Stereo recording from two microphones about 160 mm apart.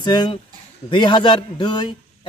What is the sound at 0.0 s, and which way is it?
Speech, 30° left (ahead or behind).